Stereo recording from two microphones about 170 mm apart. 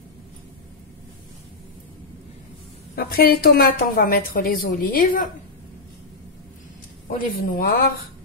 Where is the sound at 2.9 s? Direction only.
65° left (ahead or behind).